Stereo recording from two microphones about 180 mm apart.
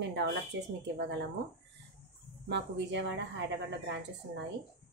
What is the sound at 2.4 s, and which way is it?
Speech, 75° right (ahead or behind).